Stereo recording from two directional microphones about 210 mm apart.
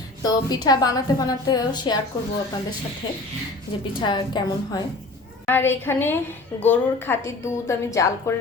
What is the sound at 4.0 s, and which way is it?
Speech, 20° left (ahead or behind).